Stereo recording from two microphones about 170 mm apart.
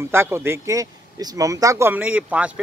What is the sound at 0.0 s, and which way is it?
Speech, 15° right (ahead or behind).